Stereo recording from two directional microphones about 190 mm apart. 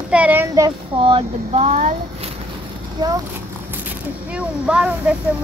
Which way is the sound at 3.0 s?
20° right (ahead or behind).